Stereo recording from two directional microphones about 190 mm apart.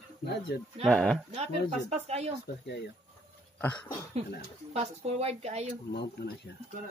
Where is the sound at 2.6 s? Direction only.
65° left (ahead or behind).